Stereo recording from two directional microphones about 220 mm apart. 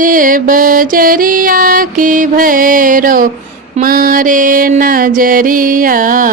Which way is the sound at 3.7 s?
40° right (ahead or behind).